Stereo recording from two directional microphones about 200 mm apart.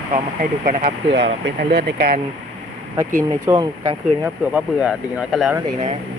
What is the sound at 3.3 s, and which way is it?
Speech, 15° right (ahead or behind).